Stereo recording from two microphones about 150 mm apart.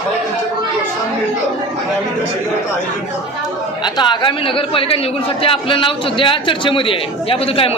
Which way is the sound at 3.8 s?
30° left (ahead or behind).